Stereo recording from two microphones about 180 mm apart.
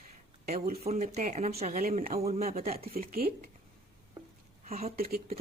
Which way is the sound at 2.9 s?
55° right (ahead or behind).